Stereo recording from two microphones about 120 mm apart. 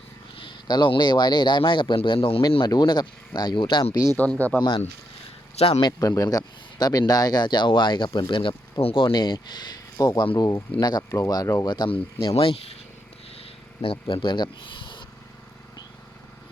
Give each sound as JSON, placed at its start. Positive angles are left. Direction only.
{"t": 0.3, "sound": "speech", "side_deg": 45}
{"t": 2.6, "sound": "speech", "side_deg": 35}
{"t": 4.2, "sound": "speech", "side_deg": 10}
{"t": 5.5, "sound": "speech", "side_deg": 60}
{"t": 5.8, "sound": "speech", "side_deg": 30}
{"t": 11.7, "sound": "speech", "side_deg": 45}
{"t": 13.3, "sound": "purr", "side_deg": 50}